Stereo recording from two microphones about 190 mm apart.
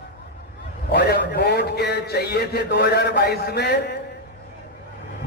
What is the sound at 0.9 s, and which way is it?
A man's voice, 60° left (ahead or behind).